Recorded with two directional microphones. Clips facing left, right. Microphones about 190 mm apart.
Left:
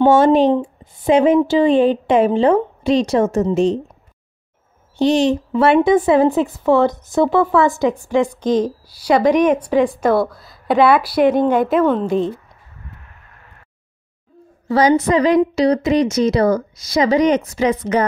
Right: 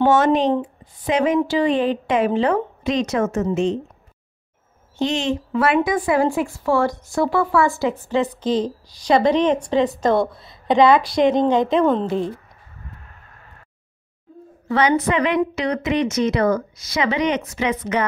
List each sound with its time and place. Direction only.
0.0 s a woman's voice: 30° left (ahead or behind)
4.9 s a woman's voice: 35° left (ahead or behind); by 12.1 s 5° left (ahead or behind)
14.7 s a woman's voice: 35° left (ahead or behind)